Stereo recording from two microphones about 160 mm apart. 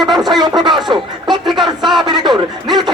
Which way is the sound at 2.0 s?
25° right (ahead or behind).